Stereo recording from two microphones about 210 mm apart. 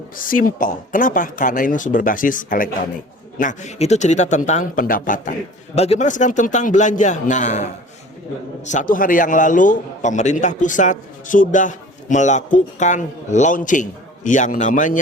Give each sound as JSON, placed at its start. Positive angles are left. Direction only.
{"t": 0.2, "sound": "a man's voice", "side_deg": 40}